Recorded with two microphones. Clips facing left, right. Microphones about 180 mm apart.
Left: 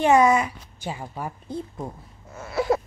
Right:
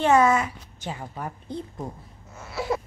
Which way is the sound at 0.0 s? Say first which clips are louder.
Left 2 dB; 15° left (ahead or behind).